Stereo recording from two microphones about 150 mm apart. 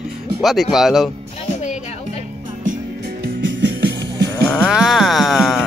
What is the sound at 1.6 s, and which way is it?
Music, 50° left (ahead or behind).